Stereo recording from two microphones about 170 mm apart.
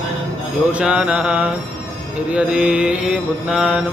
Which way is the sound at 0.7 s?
5° right (ahead or behind).